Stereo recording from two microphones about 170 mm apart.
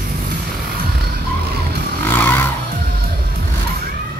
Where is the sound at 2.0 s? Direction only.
10° left (ahead or behind).